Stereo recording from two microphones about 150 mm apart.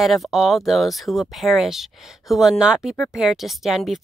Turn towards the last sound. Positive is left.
turn(degrees=0)  # may be behind; listen again after turning